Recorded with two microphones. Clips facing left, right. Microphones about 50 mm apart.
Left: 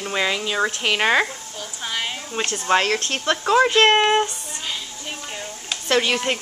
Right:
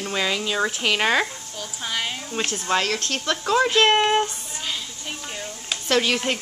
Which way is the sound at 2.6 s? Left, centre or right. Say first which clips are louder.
Left 5 dB; left.